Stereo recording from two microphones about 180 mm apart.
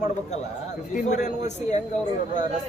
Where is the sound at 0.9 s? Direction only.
40° left (ahead or behind).